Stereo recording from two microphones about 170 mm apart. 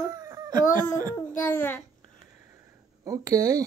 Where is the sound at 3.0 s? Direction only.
20° right (ahead or behind).